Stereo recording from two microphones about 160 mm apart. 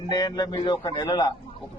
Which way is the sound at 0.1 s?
25° left (ahead or behind).